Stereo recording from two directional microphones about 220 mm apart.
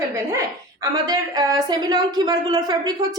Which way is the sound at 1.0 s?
15° right (ahead or behind).